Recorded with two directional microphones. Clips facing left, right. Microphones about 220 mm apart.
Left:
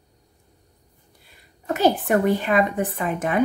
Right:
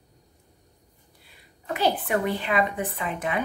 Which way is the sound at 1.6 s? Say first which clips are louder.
Left 6 dB; 45° left (ahead or behind).